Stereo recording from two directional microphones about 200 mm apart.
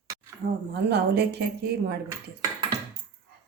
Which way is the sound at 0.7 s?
55° right (ahead or behind).